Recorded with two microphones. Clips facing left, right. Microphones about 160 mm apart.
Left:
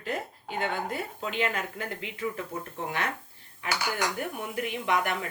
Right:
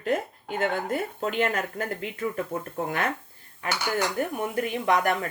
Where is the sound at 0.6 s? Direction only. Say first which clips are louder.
Right 4 dB; 45° right (ahead or behind).